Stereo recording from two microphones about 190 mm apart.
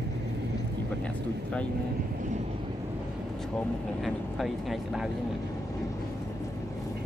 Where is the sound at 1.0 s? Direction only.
5° left (ahead or behind).